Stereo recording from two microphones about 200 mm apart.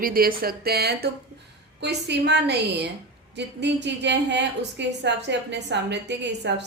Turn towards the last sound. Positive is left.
turn(degrees=-60)  # may be behind; listen again after turning